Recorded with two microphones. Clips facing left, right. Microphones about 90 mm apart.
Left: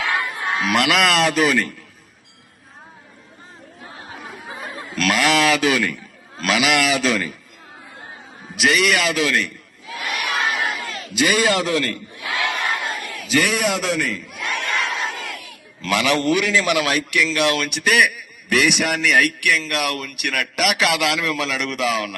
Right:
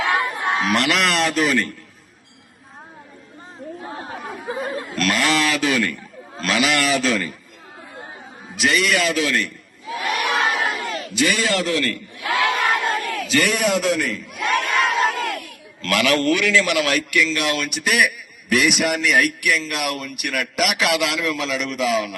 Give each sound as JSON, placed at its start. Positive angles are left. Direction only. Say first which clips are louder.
{"t": 0.1, "sound": "a sound", "louder": "right 2 dB", "side_deg": -20}
{"t": 0.7, "sound": "a man's voice", "louder": "left 4 dB", "side_deg": 10}
{"t": 4.2, "sound": "chatter", "louder": "right 5 dB", "side_deg": 0}
{"t": 4.9, "sound": "a man's voice", "louder": "left 3 dB", "side_deg": 0}
{"t": 8.5, "sound": "a man's voice", "louder": "left 1 dB", "side_deg": 0}
{"t": 10.0, "sound": "crowd", "louder": "right 3 dB", "side_deg": 0}
{"t": 11.2, "sound": "a man's voice", "louder": "left 2 dB", "side_deg": 15}
{"t": 13.2, "sound": "a man's voice", "louder": "left 1 dB", "side_deg": 0}
{"t": 14.6, "sound": "a sound", "louder": "right 4 dB", "side_deg": 0}
{"t": 16.5, "sound": "a man's voice", "louder": "even", "side_deg": 20}
{"t": 17.1, "sound": "a man's voice", "louder": "left 1 dB", "side_deg": 0}